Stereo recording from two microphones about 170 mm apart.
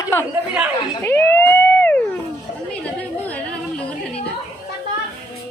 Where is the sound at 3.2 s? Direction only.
10° left (ahead or behind).